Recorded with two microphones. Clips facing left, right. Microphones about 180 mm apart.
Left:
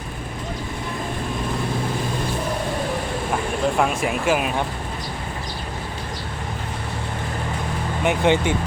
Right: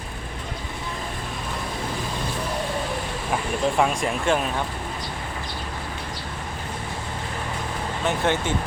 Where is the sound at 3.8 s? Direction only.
5° left (ahead or behind).